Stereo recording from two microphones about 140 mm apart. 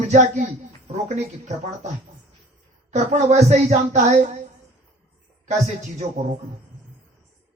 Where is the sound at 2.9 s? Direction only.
55° right (ahead or behind).